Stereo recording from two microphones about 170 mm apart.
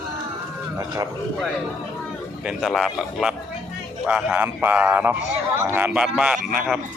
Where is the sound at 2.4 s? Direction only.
Centre (ahead or behind).